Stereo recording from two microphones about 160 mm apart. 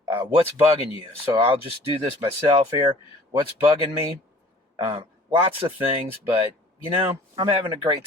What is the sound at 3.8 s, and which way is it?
Speech, 30° right (ahead or behind).